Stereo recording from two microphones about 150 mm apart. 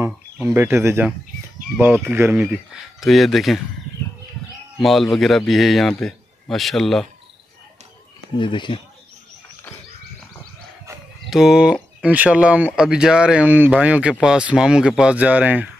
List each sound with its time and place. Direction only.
0.5 s speech: 15° right (ahead or behind)
3.0 s a man's voice: centre (ahead or behind)
4.7 s a man's voice: centre (ahead or behind)
8.4 s speech: 30° left (ahead or behind)
11.2 s speech: 5° right (ahead or behind)